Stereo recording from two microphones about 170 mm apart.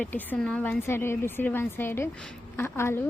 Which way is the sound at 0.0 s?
10° left (ahead or behind).